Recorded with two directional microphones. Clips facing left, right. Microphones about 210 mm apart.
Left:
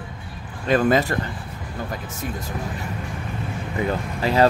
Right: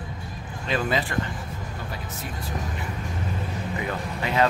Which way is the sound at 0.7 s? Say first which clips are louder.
Left 8 dB; 50° left (ahead or behind).